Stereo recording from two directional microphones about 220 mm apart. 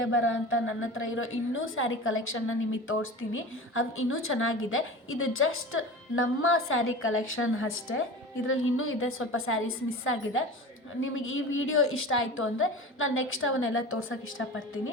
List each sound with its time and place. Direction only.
0.0 s a woman's voice: 60° left (ahead or behind)